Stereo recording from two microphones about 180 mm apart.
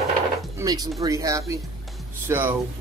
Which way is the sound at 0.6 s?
20° right (ahead or behind).